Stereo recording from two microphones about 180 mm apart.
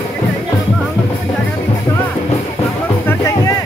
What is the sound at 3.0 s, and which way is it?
Music, 15° left (ahead or behind).